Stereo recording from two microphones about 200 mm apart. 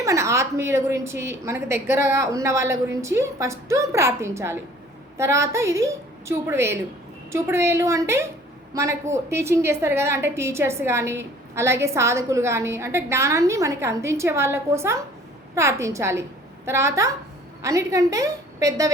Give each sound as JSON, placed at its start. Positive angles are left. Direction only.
{"t": 0.0, "sound": "a woman's voice", "side_deg": -15}